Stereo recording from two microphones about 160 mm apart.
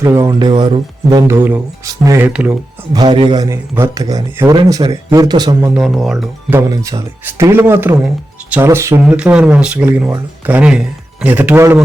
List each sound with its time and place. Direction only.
0.0 s a man's voice: 20° right (ahead or behind)
1.1 s speech: 15° right (ahead or behind)
2.9 s a man's voice: 25° right (ahead or behind)
5.5 s speech: 5° right (ahead or behind)
6.5 s speech: 20° right (ahead or behind)
9.0 s speech: 5° right (ahead or behind)